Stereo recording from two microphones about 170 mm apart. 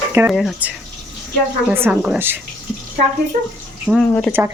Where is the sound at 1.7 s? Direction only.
10° right (ahead or behind).